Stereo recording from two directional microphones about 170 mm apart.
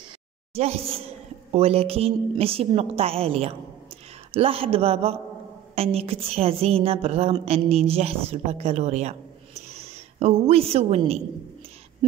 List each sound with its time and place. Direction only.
0.6 s a woman's voice: 35° right (ahead or behind)